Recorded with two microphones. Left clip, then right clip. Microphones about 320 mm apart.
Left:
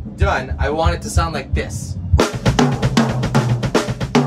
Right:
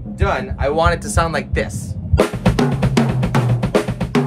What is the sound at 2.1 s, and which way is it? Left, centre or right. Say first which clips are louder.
Drum: even; centre.